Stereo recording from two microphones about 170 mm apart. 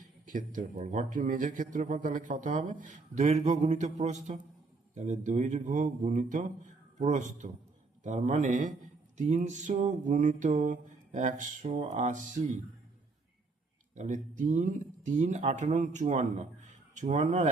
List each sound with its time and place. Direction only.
0.3 s speech: 50° right (ahead or behind)
13.9 s speech: 45° right (ahead or behind)